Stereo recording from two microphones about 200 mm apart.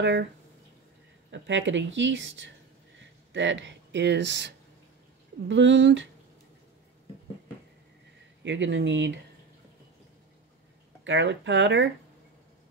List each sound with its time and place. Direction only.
0.0 s speech: 65° right (ahead or behind)
1.3 s speech: 65° right (ahead or behind)
8.5 s speech: 65° right (ahead or behind)
11.1 s speech: 65° right (ahead or behind)